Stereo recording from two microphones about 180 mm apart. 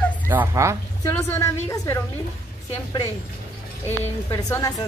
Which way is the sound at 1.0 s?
15° left (ahead or behind).